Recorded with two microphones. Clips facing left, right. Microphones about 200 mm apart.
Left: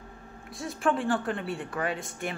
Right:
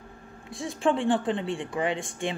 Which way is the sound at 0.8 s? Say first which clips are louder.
Right 3 dB; 20° right (ahead or behind).